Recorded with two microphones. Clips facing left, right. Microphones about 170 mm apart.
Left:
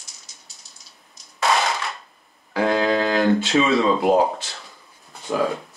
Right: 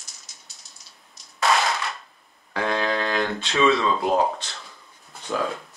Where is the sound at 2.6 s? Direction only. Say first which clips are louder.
Left 5 dB; 25° left (ahead or behind).